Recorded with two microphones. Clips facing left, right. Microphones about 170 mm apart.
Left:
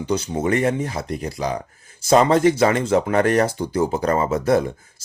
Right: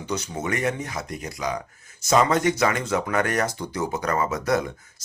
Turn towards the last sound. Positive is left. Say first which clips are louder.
# left 5 dB
turn(degrees=30)  # may be behind; listen again after turning